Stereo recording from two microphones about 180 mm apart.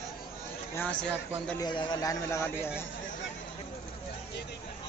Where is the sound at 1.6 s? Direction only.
25° left (ahead or behind).